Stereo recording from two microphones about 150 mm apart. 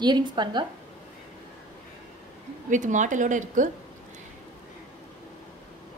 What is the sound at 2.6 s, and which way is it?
A woman's voice, 55° right (ahead or behind).